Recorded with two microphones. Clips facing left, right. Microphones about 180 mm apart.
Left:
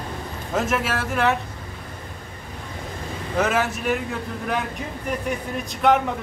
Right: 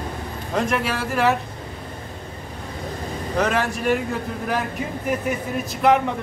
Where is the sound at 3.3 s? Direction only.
5° left (ahead or behind).